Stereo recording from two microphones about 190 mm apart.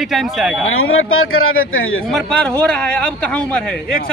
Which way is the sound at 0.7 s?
90° left.